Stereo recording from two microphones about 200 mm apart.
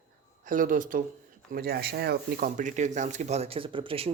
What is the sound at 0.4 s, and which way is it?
Speech, 40° right (ahead or behind).